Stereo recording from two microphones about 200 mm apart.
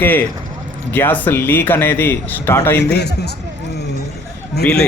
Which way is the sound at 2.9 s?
55° left (ahead or behind).